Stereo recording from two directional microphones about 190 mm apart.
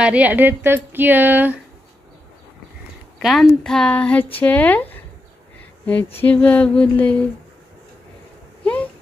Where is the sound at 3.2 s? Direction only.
Centre (ahead or behind).